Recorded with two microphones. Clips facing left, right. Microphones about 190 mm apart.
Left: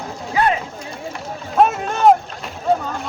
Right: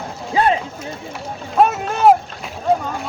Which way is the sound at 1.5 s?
Centre (ahead or behind).